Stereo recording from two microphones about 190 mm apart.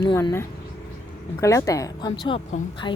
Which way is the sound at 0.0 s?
20° left (ahead or behind).